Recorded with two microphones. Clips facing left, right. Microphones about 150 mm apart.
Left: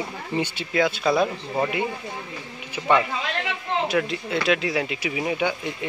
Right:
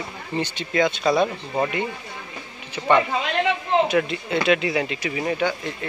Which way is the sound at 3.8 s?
Centre (ahead or behind).